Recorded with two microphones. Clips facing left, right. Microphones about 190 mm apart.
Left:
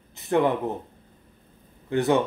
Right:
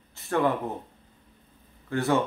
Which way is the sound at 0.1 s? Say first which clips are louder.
Left 3 dB; 20° left (ahead or behind).